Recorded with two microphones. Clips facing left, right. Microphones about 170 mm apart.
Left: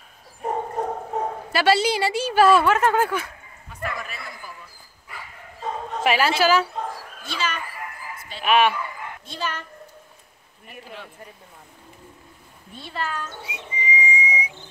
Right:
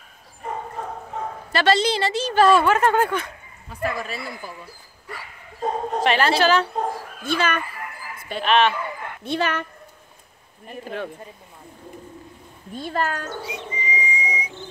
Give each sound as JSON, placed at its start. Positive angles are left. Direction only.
{"t": 0.5, "sound": "dog", "side_deg": 40}
{"t": 1.5, "sound": "a woman's voice", "side_deg": 10}
{"t": 3.8, "sound": "speech", "side_deg": -30}
{"t": 5.6, "sound": "bow-wow", "side_deg": -40}
{"t": 6.0, "sound": "a woman's voice", "side_deg": 5}
{"t": 6.7, "sound": "dog", "side_deg": -50}
{"t": 8.4, "sound": "a woman's voice", "side_deg": 10}
{"t": 9.2, "sound": "speech", "side_deg": -65}
{"t": 12.7, "sound": "speech", "side_deg": -45}
{"t": 13.5, "sound": "whistling", "side_deg": 10}